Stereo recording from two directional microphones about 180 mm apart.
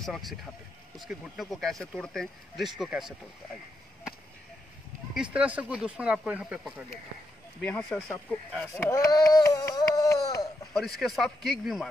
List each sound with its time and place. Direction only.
0.0 s speech: centre (ahead or behind)
5.1 s speech: 5° right (ahead or behind)
7.6 s speech: 10° left (ahead or behind)
8.8 s a sound: 20° left (ahead or behind)
11.0 s speech: centre (ahead or behind)